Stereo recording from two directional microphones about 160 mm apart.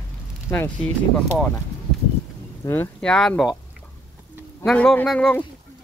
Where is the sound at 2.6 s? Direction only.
15° left (ahead or behind).